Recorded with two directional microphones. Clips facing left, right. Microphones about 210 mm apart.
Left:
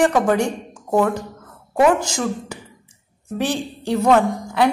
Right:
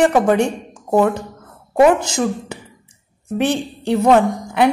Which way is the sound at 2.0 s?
20° right (ahead or behind).